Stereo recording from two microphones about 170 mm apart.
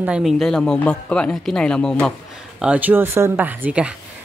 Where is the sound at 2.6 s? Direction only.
10° right (ahead or behind).